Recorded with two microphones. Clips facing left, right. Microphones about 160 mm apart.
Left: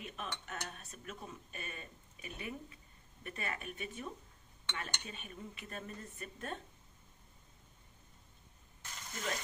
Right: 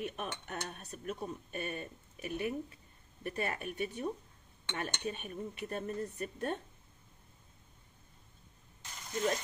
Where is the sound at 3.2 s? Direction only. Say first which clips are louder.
Right 6 dB; 40° right (ahead or behind).